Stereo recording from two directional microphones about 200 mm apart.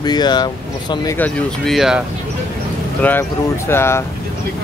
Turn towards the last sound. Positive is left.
turn(degrees=10)  # may be behind; listen again after turning